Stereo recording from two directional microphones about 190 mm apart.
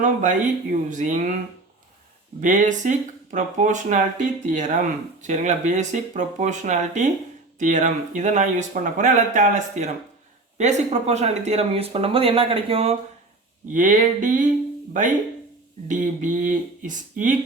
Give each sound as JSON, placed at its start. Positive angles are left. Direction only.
{"t": 0.0, "sound": "speech", "side_deg": -40}
{"t": 2.4, "sound": "speech", "side_deg": -40}
{"t": 13.7, "sound": "speech", "side_deg": -40}
{"t": 15.9, "sound": "speech", "side_deg": -40}